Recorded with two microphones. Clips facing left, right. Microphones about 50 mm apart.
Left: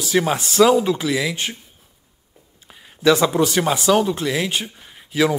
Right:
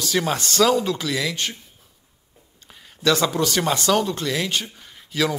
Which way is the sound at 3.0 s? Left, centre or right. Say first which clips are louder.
Left 4 dB; centre.